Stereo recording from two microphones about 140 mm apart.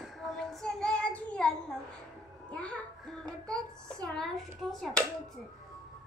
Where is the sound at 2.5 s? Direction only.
10° left (ahead or behind).